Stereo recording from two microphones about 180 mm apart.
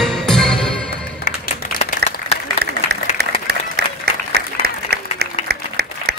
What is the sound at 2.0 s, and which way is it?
Applause, 65° right (ahead or behind).